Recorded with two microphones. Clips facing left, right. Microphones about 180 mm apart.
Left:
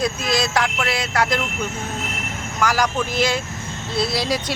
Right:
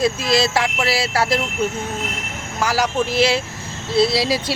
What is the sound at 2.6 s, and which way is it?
Speech, 30° right (ahead or behind).